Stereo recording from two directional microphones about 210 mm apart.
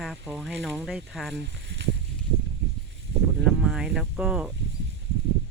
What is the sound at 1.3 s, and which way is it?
Speech, 55° right (ahead or behind).